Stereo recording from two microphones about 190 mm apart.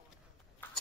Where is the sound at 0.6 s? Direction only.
10° left (ahead or behind).